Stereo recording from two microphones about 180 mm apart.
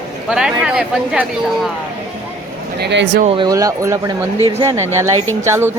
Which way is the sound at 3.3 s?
25° right (ahead or behind).